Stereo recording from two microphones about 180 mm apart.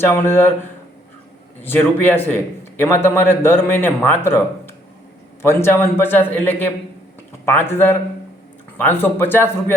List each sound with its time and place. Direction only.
0.0 s a man's voice: 15° left (ahead or behind)
1.6 s a man's voice: 10° left (ahead or behind)